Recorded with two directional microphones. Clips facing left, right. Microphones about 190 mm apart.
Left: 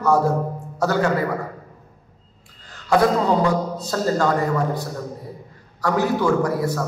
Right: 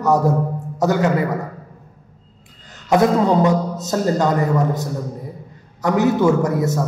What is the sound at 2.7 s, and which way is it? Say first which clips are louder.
A man's voice: right 2 dB; 20° right (ahead or behind).